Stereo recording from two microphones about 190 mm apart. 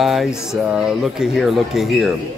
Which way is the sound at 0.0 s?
Centre (ahead or behind).